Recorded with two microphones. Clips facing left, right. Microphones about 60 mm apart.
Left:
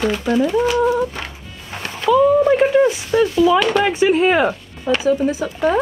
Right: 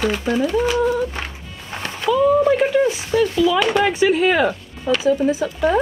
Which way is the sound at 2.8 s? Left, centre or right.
Left.